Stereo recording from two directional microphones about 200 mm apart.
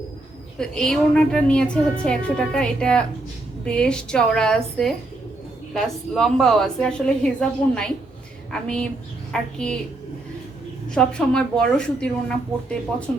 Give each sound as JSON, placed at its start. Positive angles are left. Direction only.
{"t": 0.6, "sound": "a woman's voice", "side_deg": 5}
{"t": 10.9, "sound": "a woman's voice", "side_deg": 5}